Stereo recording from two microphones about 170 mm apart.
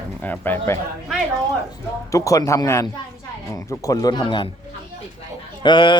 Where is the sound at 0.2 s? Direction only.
10° left (ahead or behind); by 4.5 s 25° left (ahead or behind).